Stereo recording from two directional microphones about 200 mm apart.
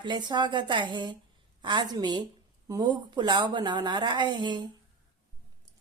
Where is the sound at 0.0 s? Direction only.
20° right (ahead or behind).